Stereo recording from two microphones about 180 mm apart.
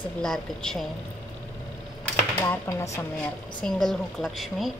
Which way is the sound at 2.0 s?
10° left (ahead or behind).